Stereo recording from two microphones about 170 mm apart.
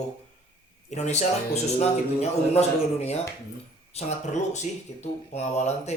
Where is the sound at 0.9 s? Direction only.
40° left (ahead or behind).